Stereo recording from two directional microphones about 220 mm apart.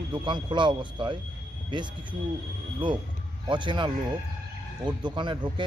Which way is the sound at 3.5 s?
20° right (ahead or behind).